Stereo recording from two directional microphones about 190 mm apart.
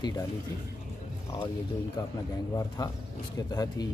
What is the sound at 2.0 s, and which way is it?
Speech, 20° left (ahead or behind).